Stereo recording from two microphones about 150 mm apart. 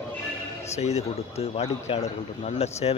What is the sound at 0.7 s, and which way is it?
A man's voice, 45° left (ahead or behind).